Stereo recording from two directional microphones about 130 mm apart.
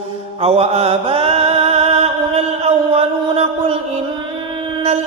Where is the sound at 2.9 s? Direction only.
50° right (ahead or behind).